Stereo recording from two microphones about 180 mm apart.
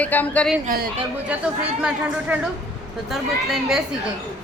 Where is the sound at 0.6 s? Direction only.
55° right (ahead or behind).